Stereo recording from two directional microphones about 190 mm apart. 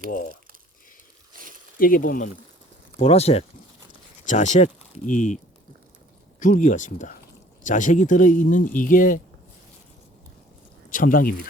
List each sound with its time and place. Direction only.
1.3 s a sound: 45° right (ahead or behind)
1.8 s speech: 45° left (ahead or behind)
3.0 s speech: 35° left (ahead or behind)
6.4 s speech: 40° left (ahead or behind)
10.8 s speech: 45° left (ahead or behind)